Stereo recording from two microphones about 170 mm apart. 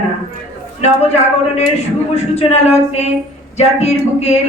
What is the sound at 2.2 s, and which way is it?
Speech, 40° left (ahead or behind).